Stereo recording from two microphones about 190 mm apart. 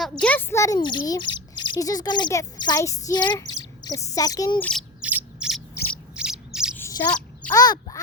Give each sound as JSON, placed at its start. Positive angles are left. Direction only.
{"t": 0.0, "sound": "speech", "side_deg": 5}
{"t": 4.6, "sound": "owl", "side_deg": 0}
{"t": 6.1, "sound": "chirp", "side_deg": -5}
{"t": 6.7, "sound": "bird", "side_deg": 15}
{"t": 7.4, "sound": "speech", "side_deg": 20}